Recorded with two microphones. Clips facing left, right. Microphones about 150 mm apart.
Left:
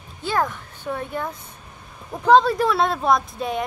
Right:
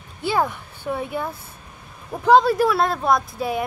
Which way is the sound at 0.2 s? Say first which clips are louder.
Right 1 dB; 10° right (ahead or behind).